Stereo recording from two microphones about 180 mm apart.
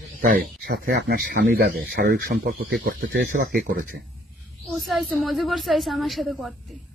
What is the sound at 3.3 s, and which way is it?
Speech, 50° right (ahead or behind).